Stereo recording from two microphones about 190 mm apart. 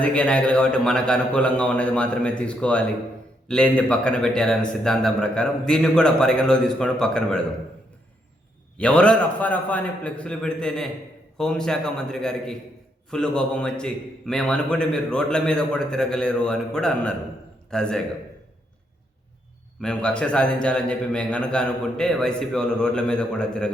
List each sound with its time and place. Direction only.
0.0 s a man's voice: 5° left (ahead or behind)
8.8 s a man's voice: 5° left (ahead or behind)
19.8 s a man's voice: 5° left (ahead or behind)